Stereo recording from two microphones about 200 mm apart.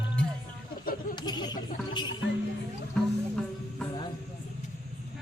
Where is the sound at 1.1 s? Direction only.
20° left (ahead or behind).